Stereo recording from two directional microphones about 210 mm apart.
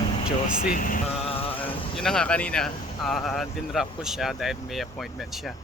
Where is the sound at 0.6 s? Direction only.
40° left (ahead or behind).